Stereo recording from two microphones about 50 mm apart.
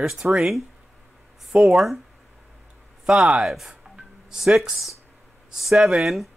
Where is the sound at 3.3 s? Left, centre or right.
Centre.